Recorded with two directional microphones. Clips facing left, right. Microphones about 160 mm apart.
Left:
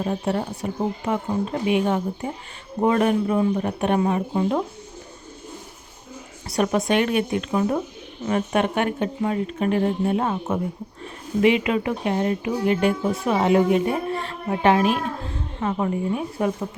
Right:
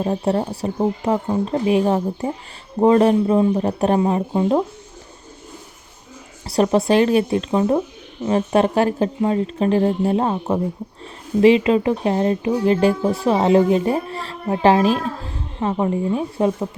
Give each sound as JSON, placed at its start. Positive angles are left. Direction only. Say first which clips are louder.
{"t": 0.0, "sound": "speech", "louder": "right 4 dB", "side_deg": -35}
{"t": 6.4, "sound": "speech", "louder": "right 5 dB", "side_deg": -30}